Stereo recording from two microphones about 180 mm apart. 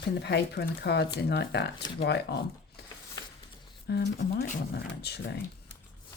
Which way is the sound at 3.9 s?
65° left (ahead or behind).